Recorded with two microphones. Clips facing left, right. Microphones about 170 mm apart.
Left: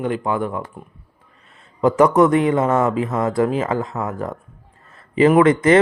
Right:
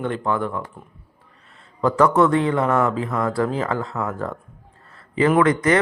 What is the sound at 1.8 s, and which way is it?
A man's voice, 20° left (ahead or behind).